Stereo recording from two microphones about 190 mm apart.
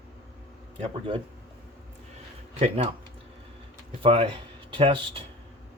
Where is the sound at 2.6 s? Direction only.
30° right (ahead or behind).